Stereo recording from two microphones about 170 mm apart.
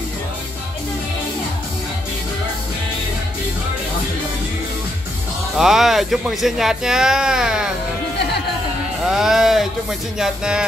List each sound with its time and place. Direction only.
5.6 s speech: 5° right (ahead or behind)
9.0 s speech: 5° right (ahead or behind)